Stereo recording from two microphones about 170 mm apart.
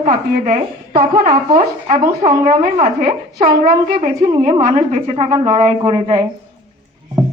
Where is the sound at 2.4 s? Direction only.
45° right (ahead or behind).